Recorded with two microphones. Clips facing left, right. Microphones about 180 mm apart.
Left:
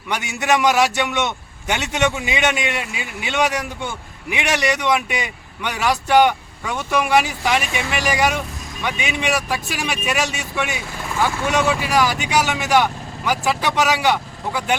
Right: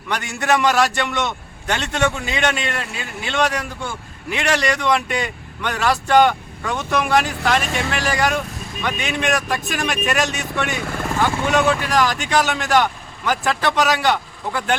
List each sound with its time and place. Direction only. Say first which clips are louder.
0.1 s speech: even; 10° left (ahead or behind)
10.8 s speech: right 5 dB; 55° right (ahead or behind)
11.2 s speech: right 1 dB; 5° left (ahead or behind)